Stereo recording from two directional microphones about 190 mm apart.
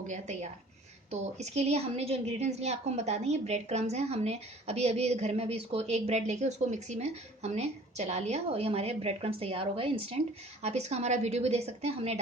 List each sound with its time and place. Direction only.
0.1 s a woman's voice: 40° right (ahead or behind)